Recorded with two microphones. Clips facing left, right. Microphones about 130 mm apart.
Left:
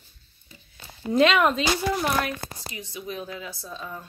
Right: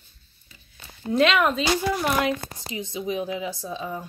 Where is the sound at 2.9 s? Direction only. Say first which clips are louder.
Right 7 dB; 15° right (ahead or behind).